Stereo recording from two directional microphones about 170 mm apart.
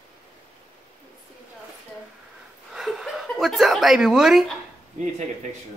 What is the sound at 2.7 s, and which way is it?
Chuckle, centre (ahead or behind).